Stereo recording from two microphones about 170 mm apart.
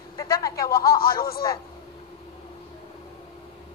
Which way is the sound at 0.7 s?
60° left (ahead or behind).